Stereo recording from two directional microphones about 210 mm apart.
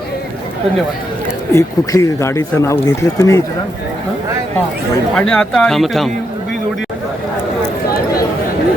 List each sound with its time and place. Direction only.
1.5 s speech: 15° left (ahead or behind)
5.1 s speech: 5° left (ahead or behind)